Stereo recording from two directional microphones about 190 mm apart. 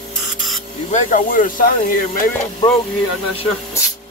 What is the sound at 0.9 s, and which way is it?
Speech, 45° left (ahead or behind).